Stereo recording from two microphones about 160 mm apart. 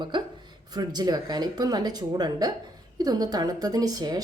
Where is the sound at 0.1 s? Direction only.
30° right (ahead or behind).